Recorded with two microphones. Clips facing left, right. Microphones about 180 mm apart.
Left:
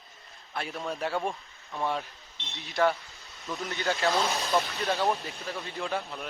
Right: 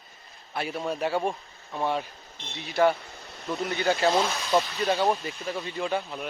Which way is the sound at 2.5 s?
60° right (ahead or behind).